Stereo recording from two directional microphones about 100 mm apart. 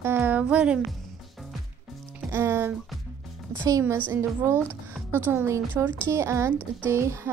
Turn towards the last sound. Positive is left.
turn(degrees=-30)  # may be behind; listen again after turning